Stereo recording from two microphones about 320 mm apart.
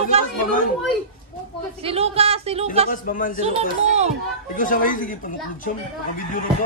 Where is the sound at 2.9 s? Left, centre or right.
Left.